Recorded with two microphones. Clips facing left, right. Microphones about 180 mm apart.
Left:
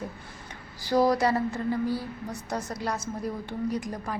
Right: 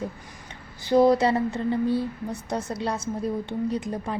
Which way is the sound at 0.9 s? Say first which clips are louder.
Right 4 dB; 25° right (ahead or behind).